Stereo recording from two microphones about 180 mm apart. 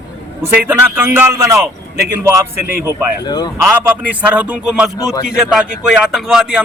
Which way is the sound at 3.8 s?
10° right (ahead or behind).